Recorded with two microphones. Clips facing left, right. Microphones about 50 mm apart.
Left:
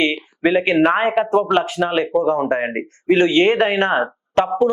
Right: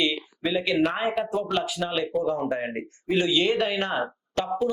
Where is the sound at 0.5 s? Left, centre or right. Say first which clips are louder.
Left 8 dB; left.